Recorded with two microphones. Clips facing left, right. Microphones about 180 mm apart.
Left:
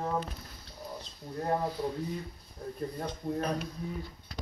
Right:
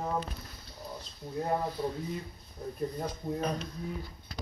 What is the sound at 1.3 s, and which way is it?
Speech, 5° right (ahead or behind).